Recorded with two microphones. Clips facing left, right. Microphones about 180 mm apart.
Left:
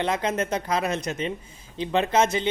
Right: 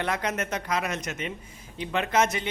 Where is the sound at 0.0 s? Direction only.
25° left (ahead or behind).